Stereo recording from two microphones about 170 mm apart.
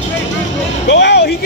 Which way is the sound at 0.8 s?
90° left.